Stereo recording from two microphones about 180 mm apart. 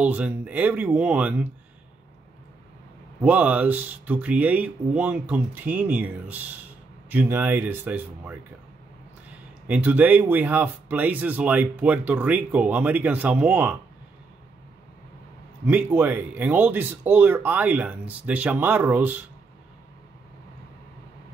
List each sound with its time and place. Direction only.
0.0 s speech: 10° right (ahead or behind)
3.2 s speech: 10° right (ahead or behind)
9.7 s speech: 10° right (ahead or behind)
15.6 s speech: 10° right (ahead or behind)